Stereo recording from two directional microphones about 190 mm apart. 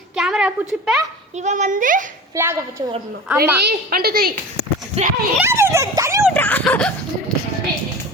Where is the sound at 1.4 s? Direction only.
40° right (ahead or behind).